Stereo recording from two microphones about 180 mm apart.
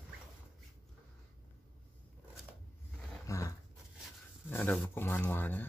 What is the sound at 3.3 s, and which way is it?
Dog, 20° left (ahead or behind).